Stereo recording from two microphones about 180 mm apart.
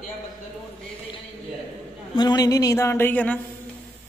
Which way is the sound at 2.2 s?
20° left (ahead or behind).